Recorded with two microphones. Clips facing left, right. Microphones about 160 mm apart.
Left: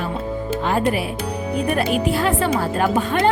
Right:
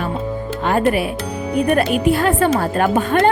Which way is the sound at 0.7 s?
60° right (ahead or behind).